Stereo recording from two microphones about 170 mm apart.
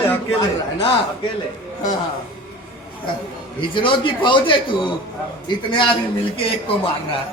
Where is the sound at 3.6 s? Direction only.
30° left (ahead or behind).